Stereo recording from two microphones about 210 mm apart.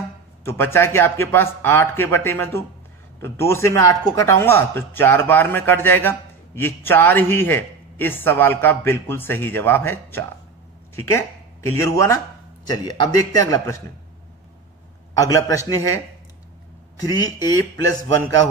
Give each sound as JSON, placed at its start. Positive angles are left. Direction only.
{"t": 0.4, "sound": "speech", "side_deg": 10}
{"t": 15.1, "sound": "speech", "side_deg": 15}
{"t": 17.0, "sound": "speech", "side_deg": 15}